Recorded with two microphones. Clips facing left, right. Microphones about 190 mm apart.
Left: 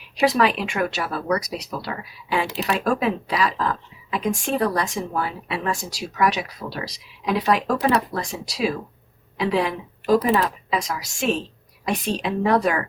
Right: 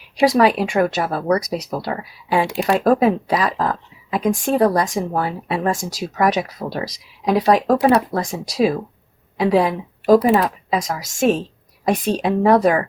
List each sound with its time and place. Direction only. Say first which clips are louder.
0.3 s speech: right 6 dB; 35° right (ahead or behind)
0.9 s a woman's voice: right 5 dB; 50° right (ahead or behind)
2.3 s speech: right 5 dB; 35° right (ahead or behind)
3.0 s a woman's voice: right 5 dB; 50° right (ahead or behind)
8.1 s a woman's voice: right 6 dB; 50° right (ahead or behind)